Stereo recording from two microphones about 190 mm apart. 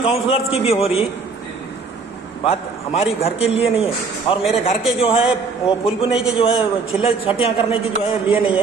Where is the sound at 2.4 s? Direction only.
30° left (ahead or behind).